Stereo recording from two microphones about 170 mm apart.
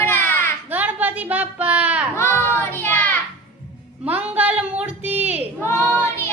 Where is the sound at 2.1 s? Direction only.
15° left (ahead or behind).